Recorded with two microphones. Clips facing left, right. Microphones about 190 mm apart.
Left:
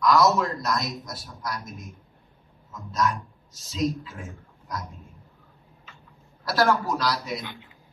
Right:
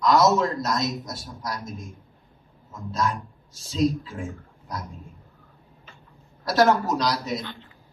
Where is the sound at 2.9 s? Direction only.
30° right (ahead or behind).